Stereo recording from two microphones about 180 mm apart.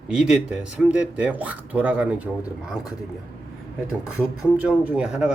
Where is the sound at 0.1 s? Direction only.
5° right (ahead or behind).